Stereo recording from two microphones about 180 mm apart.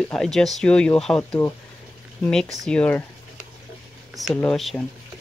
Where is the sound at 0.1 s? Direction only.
Centre (ahead or behind).